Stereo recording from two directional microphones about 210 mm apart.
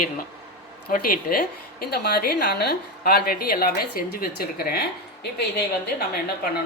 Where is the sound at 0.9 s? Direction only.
45° left (ahead or behind).